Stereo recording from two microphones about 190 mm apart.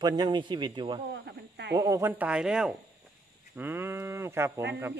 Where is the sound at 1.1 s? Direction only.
65° right (ahead or behind).